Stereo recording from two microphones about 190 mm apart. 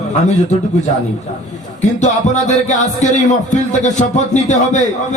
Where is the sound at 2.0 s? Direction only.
40° left (ahead or behind).